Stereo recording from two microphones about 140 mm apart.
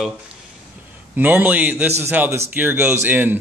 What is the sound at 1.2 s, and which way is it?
Speech, 15° right (ahead or behind).